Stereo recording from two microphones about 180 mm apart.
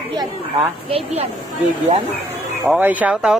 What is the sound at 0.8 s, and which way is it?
Speech, 35° right (ahead or behind).